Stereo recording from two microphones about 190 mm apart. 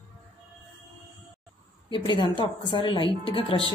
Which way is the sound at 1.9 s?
25° left (ahead or behind).